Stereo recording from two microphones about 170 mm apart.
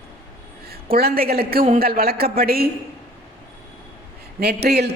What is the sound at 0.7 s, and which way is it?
A woman's voice, 65° right (ahead or behind).